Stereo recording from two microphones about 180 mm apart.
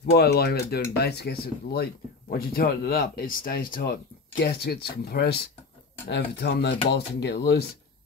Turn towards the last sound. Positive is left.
turn(degrees=70)  # may be behind; listen again after turning